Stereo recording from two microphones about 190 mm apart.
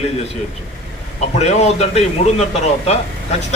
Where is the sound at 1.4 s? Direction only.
35° left (ahead or behind).